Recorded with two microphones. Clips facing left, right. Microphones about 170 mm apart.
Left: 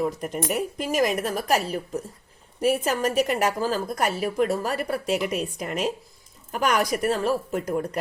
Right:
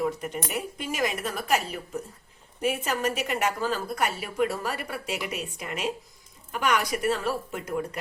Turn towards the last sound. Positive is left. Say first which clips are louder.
# left 5 dB
turn(degrees=40)  # may be behind; listen again after turning